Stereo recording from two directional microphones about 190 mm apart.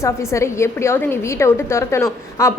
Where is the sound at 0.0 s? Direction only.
15° left (ahead or behind).